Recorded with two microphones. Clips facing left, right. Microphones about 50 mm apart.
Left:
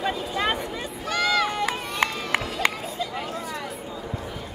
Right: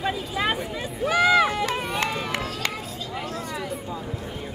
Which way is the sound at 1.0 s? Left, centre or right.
Centre.